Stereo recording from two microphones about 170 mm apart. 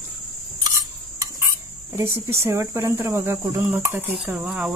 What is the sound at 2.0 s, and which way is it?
Speech, 15° right (ahead or behind).